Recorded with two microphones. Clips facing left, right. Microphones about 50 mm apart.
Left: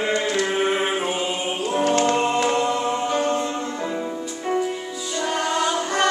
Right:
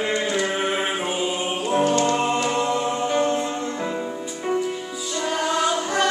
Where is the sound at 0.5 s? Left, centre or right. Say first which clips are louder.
Left 2 dB; centre.